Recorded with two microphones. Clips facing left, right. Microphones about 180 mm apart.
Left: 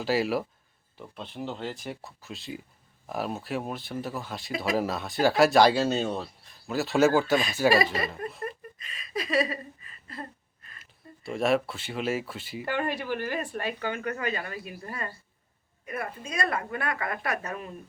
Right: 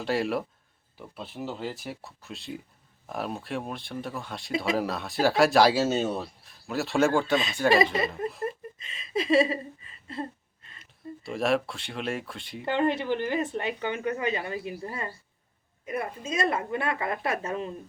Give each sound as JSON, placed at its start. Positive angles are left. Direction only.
{"t": 0.0, "sound": "speech", "side_deg": 0}
{"t": 7.9, "sound": "speech", "side_deg": -25}
{"t": 8.4, "sound": "a sound", "side_deg": -25}
{"t": 11.2, "sound": "speech", "side_deg": 0}
{"t": 12.6, "sound": "speech", "side_deg": -25}